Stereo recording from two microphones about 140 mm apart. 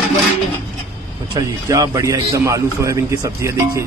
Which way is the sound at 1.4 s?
25° right (ahead or behind).